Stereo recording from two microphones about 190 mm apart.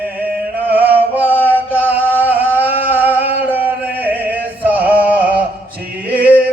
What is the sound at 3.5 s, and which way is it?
Music, 10° right (ahead or behind).